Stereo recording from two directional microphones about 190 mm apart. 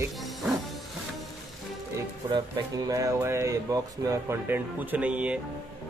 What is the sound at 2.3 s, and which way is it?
Speech, 20° right (ahead or behind).